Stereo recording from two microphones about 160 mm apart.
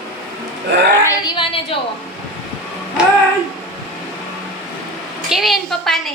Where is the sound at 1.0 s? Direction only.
25° left (ahead or behind).